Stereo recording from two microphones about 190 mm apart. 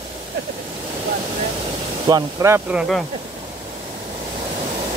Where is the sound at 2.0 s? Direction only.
20° right (ahead or behind).